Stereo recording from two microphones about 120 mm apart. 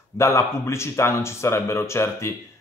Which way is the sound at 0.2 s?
25° left (ahead or behind).